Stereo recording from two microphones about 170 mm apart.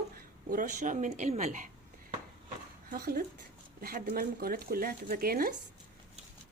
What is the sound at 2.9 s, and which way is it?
Speech, 60° right (ahead or behind).